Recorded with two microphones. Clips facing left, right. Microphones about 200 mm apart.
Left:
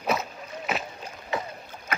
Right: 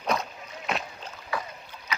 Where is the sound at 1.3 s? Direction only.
20° left (ahead or behind).